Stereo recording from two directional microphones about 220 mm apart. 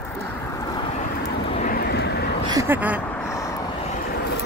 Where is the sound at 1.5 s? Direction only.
40° left (ahead or behind).